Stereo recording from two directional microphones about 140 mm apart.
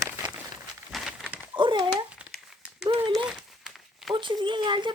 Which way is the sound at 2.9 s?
35° right (ahead or behind).